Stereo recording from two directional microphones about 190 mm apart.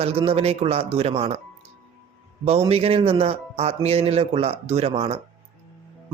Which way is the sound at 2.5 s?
30° right (ahead or behind).